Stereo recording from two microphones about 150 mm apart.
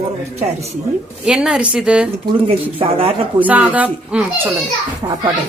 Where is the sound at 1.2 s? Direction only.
5° right (ahead or behind).